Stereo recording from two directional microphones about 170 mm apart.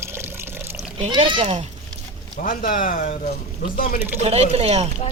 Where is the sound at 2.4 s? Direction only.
55° left (ahead or behind).